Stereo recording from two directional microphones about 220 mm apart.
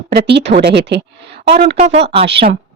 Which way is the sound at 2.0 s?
25° right (ahead or behind).